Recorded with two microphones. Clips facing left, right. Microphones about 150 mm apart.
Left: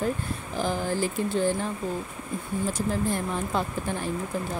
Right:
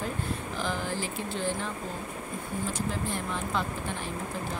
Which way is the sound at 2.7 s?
45° left (ahead or behind).